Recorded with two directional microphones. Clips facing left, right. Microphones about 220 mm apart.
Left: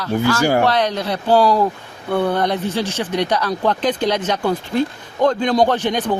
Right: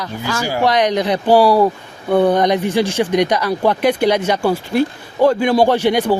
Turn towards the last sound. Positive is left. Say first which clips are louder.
# right 4 dB
turn(degrees=-10)  # may be behind; listen again after turning